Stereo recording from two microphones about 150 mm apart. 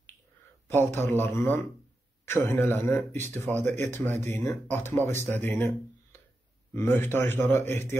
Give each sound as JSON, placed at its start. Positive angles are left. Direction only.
{"t": 0.7, "sound": "speech", "side_deg": 15}
{"t": 6.7, "sound": "speech", "side_deg": 15}